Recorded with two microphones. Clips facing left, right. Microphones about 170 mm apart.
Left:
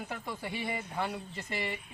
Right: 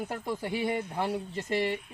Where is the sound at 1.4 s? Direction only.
45° right (ahead or behind).